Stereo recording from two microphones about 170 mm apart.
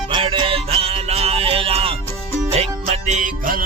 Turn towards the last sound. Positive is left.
turn(degrees=-50)  # may be behind; listen again after turning